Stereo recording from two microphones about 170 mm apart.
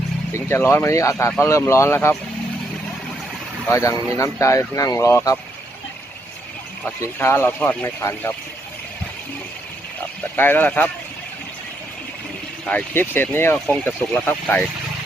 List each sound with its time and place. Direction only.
0.3 s speech: 15° left (ahead or behind)
3.7 s speech: 20° left (ahead or behind)
6.8 s speech: 15° left (ahead or behind)
10.3 s speech: 10° left (ahead or behind)
12.6 s speech: 10° left (ahead or behind)